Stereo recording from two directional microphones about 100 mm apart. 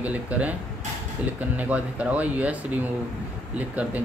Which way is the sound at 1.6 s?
15° right (ahead or behind).